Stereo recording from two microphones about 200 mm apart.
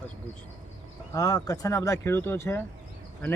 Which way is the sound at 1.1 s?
20° left (ahead or behind).